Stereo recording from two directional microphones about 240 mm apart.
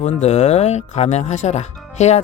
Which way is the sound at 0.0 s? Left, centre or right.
Left.